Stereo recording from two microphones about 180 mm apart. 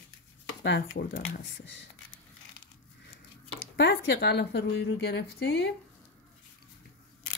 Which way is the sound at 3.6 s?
70° left (ahead or behind).